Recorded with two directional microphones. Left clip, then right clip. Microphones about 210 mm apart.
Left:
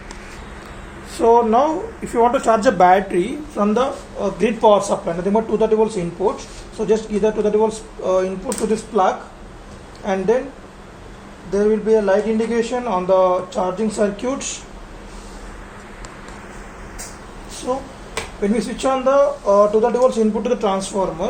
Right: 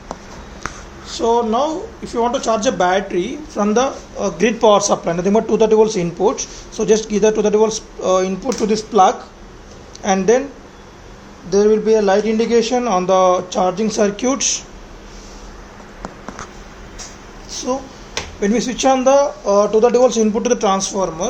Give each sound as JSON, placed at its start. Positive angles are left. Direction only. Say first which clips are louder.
{"t": 1.2, "sound": "speech", "louder": "left 2 dB", "side_deg": 5}
{"t": 3.8, "sound": "speech", "louder": "right 2 dB", "side_deg": -30}
{"t": 11.5, "sound": "speech", "louder": "right 3 dB", "side_deg": -45}
{"t": 17.7, "sound": "speech", "louder": "right 1 dB", "side_deg": -35}